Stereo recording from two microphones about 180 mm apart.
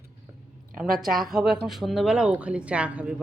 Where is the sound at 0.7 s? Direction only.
50° right (ahead or behind).